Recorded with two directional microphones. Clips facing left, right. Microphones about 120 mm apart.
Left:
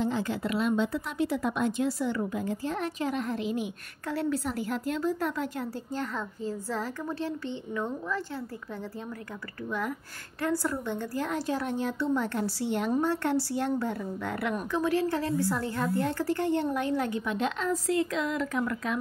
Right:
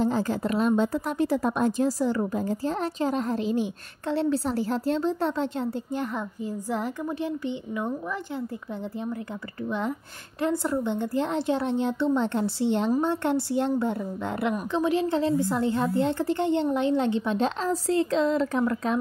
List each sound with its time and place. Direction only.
0.0 s a woman's voice: 40° right (ahead or behind); by 8.2 s 15° right (ahead or behind)
9.7 s a woman's voice: 25° right (ahead or behind)